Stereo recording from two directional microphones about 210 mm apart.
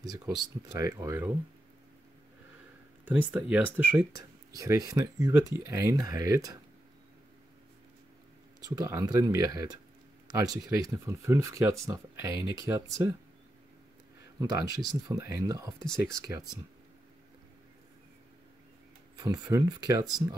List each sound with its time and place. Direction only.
0.4 s speech: 15° right (ahead or behind)
3.2 s speech: 5° right (ahead or behind)
8.6 s speech: 15° right (ahead or behind)
14.4 s speech: 15° right (ahead or behind)
19.1 s speech: 15° right (ahead or behind)